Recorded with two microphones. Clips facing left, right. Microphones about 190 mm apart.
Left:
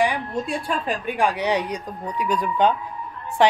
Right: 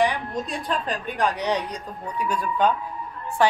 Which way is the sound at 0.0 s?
10° left (ahead or behind).